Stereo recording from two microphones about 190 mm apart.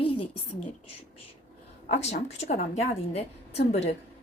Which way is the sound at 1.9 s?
35° left (ahead or behind).